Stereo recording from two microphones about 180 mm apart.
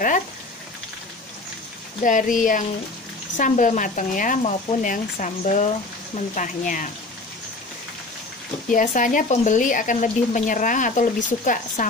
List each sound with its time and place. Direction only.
2.0 s speech: 45° left (ahead or behind)
8.6 s speech: 45° left (ahead or behind)